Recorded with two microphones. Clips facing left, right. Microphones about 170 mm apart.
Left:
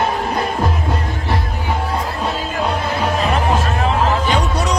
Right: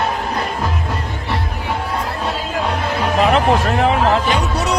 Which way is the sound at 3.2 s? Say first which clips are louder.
Right 7 dB; 65° right (ahead or behind).